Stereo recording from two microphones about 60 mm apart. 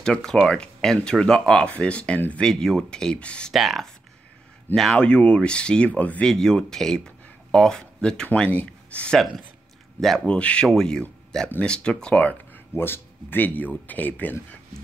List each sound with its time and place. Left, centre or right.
0.0 s speech: centre
2.4 s speech: centre
3.5 s speech: centre
5.0 s speech: centre
6.2 s speech: centre
9.9 s speech: centre
10.2 s speech: centre
12.7 s speech: left